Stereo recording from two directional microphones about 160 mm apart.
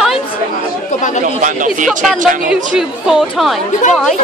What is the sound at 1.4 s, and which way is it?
Speech, 55° right (ahead or behind).